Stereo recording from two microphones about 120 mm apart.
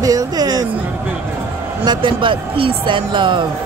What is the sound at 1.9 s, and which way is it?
Speech, 45° right (ahead or behind).